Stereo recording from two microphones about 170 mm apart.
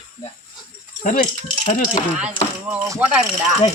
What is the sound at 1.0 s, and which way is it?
Speech, 55° left (ahead or behind).